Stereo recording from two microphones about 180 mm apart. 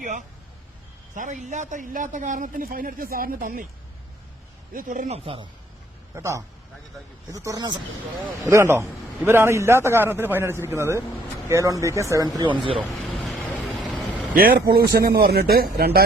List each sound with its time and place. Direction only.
0.0 s vehicle: 45° right (ahead or behind)
1.1 s a man's voice: 45° right (ahead or behind)
4.7 s speech: 50° right (ahead or behind); by 5.5 s 30° right (ahead or behind)
6.1 s a man's voice: 15° right (ahead or behind)
12.7 s vehicle: centre (ahead or behind)
14.9 s speech: 60° right (ahead or behind)